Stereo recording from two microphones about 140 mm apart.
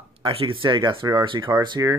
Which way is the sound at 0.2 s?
40° right (ahead or behind).